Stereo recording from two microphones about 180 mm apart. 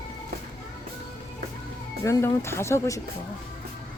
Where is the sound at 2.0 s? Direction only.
15° left (ahead or behind).